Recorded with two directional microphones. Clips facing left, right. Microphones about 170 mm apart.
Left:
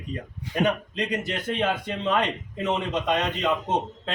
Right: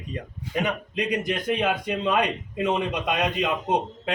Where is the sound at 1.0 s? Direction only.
10° right (ahead or behind).